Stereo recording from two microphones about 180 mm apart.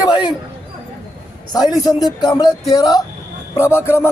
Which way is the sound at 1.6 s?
20° left (ahead or behind).